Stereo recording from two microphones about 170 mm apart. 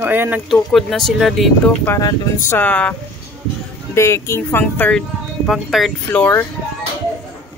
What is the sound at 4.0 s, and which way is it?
Speech, 15° left (ahead or behind).